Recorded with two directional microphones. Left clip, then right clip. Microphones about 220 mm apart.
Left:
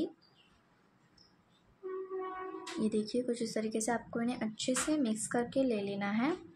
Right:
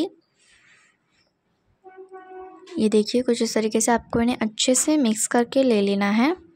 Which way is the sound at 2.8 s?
45° right (ahead or behind).